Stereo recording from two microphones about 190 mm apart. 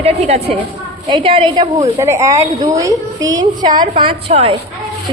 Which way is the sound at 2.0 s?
15° right (ahead or behind).